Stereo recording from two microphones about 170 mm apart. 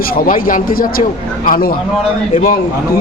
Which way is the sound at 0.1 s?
55° left (ahead or behind).